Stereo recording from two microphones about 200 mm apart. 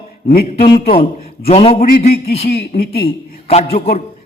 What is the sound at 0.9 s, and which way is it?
A man's voice, 30° left (ahead or behind).